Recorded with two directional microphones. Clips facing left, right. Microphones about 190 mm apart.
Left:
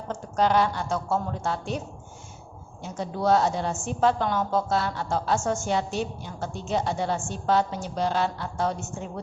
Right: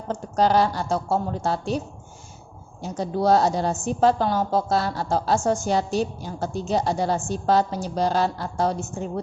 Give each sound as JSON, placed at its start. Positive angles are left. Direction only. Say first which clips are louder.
{"t": 0.1, "sound": "a woman's voice", "louder": "right 3 dB", "side_deg": -35}
{"t": 2.8, "sound": "a woman's voice", "louder": "right 4 dB", "side_deg": -35}